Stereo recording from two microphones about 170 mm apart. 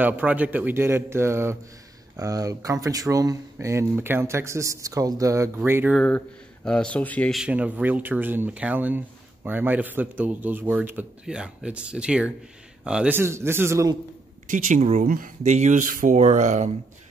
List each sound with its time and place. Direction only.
0.0 s speech: 10° right (ahead or behind)
5.9 s speech: 5° left (ahead or behind); by 13.9 s 15° right (ahead or behind)
14.5 s speech: 45° right (ahead or behind)